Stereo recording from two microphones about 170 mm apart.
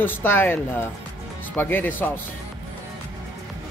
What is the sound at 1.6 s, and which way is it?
Speech, 10° left (ahead or behind).